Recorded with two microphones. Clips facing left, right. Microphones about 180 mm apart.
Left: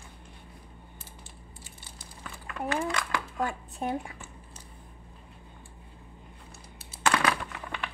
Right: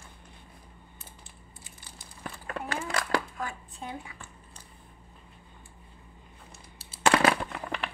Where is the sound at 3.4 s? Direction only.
50° left (ahead or behind).